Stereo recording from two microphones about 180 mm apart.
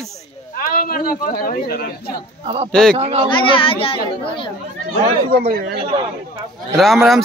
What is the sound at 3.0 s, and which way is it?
Speech, 35° right (ahead or behind).